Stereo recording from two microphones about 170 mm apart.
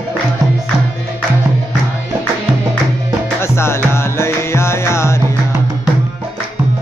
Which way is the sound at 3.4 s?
15° left (ahead or behind).